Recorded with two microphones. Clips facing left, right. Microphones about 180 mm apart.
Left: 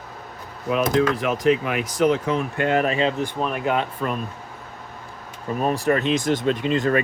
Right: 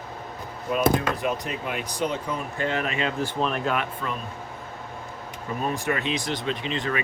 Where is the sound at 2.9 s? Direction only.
30° left (ahead or behind).